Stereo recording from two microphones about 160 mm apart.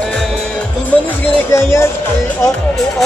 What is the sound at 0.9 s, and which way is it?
Music, 10° left (ahead or behind).